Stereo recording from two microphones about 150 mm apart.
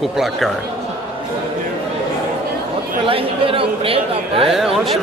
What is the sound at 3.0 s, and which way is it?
Speech, 35° right (ahead or behind).